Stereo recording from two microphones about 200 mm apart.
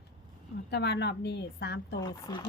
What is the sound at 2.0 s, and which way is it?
Speech, 20° left (ahead or behind).